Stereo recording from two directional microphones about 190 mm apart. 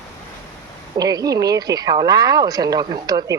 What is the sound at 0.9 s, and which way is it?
Speech, 20° right (ahead or behind).